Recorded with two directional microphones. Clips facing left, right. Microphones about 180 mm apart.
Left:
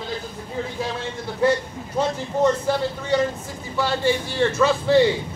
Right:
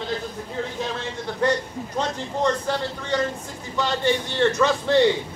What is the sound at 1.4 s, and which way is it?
A man's voice, 5° left (ahead or behind).